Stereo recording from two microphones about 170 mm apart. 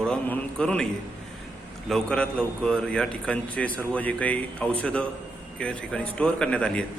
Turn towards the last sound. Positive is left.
turn(degrees=5)  # may be behind; listen again after turning